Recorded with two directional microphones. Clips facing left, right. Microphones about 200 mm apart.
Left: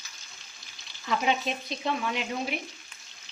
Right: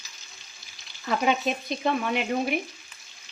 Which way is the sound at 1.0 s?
50° right (ahead or behind).